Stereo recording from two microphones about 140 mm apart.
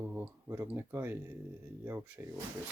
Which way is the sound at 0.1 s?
15° right (ahead or behind).